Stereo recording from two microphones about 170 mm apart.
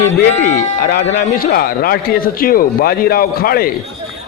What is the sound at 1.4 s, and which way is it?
A man's voice, 60° left (ahead or behind).